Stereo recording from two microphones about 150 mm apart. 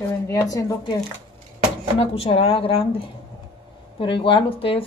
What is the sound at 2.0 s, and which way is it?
A woman's voice, 40° left (ahead or behind).